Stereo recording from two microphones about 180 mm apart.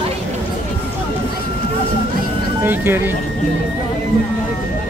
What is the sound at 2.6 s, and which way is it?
Speech, 10° right (ahead or behind).